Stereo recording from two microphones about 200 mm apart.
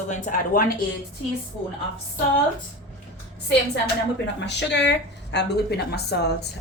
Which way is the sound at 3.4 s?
60° left (ahead or behind).